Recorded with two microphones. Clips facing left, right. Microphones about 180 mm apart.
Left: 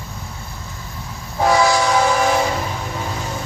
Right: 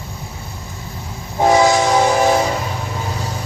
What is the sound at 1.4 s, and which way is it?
Train, 20° right (ahead or behind).